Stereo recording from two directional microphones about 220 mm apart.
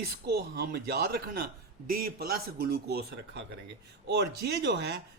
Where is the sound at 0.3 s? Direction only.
45° right (ahead or behind).